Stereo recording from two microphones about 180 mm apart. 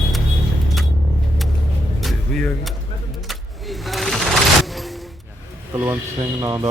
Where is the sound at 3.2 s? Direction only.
Centre (ahead or behind).